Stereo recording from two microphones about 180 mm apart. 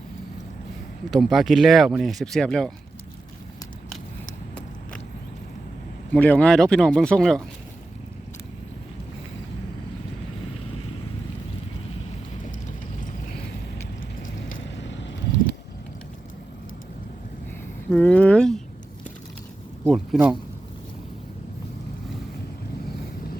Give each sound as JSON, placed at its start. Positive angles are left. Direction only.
{"t": 1.1, "sound": "speech", "side_deg": 0}
{"t": 6.1, "sound": "speech", "side_deg": 10}
{"t": 14.6, "sound": "vehicle", "side_deg": 90}
{"t": 17.9, "sound": "a sound", "side_deg": 10}
{"t": 19.8, "sound": "speech", "side_deg": 0}